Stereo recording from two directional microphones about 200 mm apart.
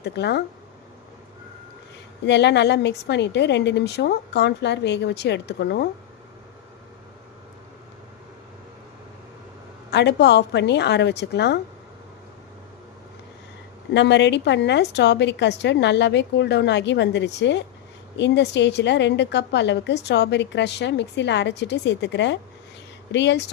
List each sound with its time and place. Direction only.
0.0 s a woman's voice: 55° left (ahead or behind)
2.2 s a woman's voice: 60° left (ahead or behind)
9.9 s a woman's voice: 55° left (ahead or behind)
13.9 s a woman's voice: 60° left (ahead or behind)